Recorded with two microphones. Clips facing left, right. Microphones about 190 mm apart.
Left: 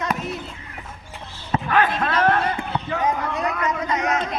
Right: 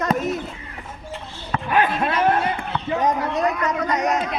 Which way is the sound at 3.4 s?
40° right (ahead or behind).